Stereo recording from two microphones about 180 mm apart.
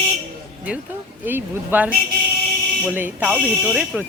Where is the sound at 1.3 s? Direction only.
10° right (ahead or behind).